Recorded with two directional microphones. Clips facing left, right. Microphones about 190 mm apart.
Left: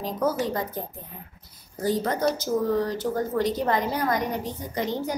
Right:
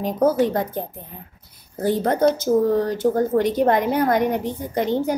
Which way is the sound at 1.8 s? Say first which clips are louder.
Right 6 dB; 60° right (ahead or behind).